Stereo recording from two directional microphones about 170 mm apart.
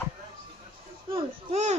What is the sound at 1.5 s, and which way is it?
Speech, 40° right (ahead or behind).